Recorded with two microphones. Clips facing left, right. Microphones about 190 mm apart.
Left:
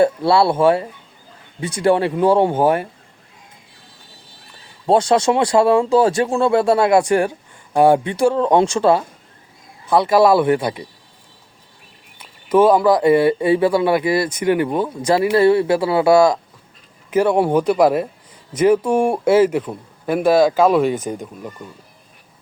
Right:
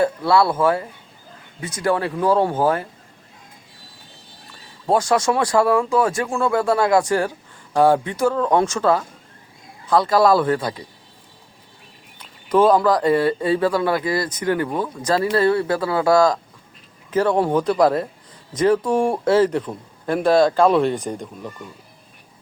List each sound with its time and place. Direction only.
0.0 s speech: 25° left (ahead or behind)
4.9 s speech: 25° left (ahead or behind)
10.2 s speech: 10° left (ahead or behind)
12.5 s speech: 10° left (ahead or behind)